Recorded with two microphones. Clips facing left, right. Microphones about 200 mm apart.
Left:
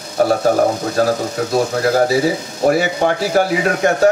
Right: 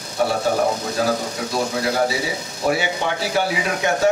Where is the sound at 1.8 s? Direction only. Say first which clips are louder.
Left 8 dB; 60° left (ahead or behind).